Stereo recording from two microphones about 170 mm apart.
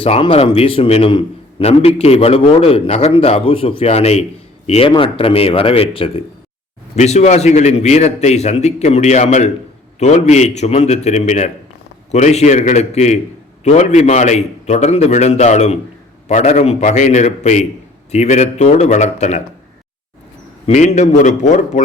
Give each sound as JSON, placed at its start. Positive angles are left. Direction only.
{"t": 0.0, "sound": "a man's voice", "side_deg": 35}
{"t": 20.7, "sound": "a man's voice", "side_deg": 40}